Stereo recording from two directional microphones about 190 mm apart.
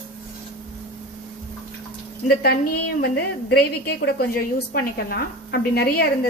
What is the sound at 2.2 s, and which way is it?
A woman's voice, 55° left (ahead or behind).